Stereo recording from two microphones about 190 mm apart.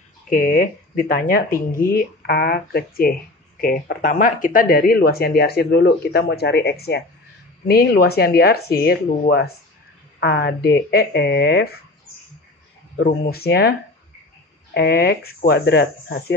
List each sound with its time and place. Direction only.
0.3 s speech: 50° left (ahead or behind)
12.9 s speech: 55° left (ahead or behind)